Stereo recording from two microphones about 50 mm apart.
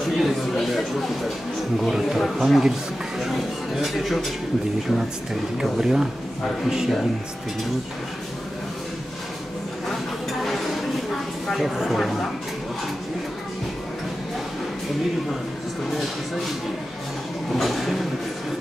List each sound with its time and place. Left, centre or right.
0.2 s speech: centre
10.4 s a sound: centre
11.5 s speech: centre
17.6 s speech: centre